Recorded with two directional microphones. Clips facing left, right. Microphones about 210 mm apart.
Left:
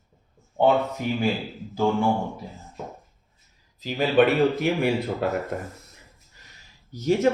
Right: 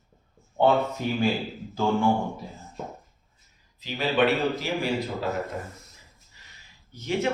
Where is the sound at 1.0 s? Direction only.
15° left (ahead or behind).